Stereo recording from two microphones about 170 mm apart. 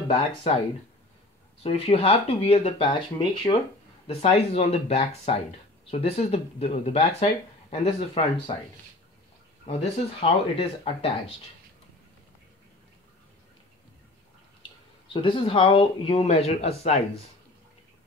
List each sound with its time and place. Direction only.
0.1 s speech: 40° left (ahead or behind)
1.6 s speech: 35° left (ahead or behind)
10.2 s speech: 35° left (ahead or behind)
15.2 s speech: 30° left (ahead or behind)